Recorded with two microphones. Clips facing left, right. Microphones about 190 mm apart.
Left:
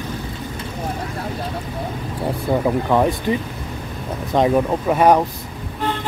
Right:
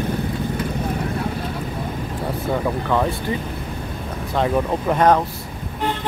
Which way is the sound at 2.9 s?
15° left (ahead or behind).